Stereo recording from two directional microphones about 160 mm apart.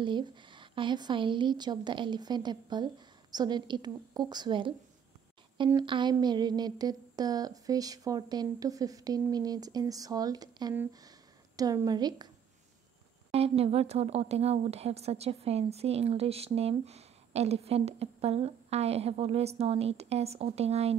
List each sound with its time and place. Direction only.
0.0 s speech: 30° right (ahead or behind)
13.3 s a woman's voice: 40° right (ahead or behind)